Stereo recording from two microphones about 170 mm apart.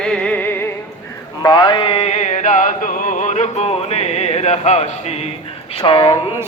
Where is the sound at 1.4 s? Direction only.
25° left (ahead or behind); by 4.9 s 40° left (ahead or behind).